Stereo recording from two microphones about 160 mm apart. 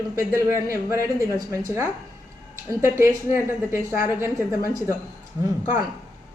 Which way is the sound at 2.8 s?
15° right (ahead or behind).